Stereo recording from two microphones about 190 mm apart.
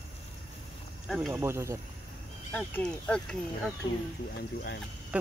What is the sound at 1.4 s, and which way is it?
Speech, 15° right (ahead or behind).